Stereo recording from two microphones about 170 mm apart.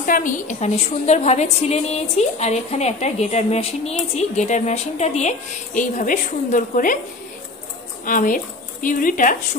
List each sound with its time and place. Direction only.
0.0 s a woman's voice: 55° left (ahead or behind)
8.0 s a woman's voice: 55° left (ahead or behind)